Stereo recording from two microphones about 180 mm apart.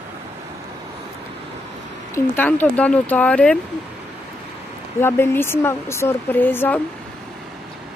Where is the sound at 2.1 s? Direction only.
10° left (ahead or behind).